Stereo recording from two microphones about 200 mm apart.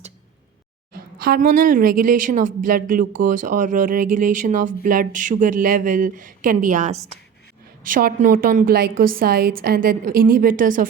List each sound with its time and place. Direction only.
0.9 s a woman's voice: 45° right (ahead or behind)